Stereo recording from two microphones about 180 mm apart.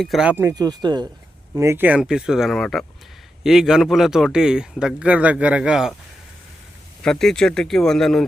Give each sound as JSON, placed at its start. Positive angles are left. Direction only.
{"t": 0.0, "sound": "speech", "side_deg": 0}
{"t": 7.0, "sound": "speech", "side_deg": 5}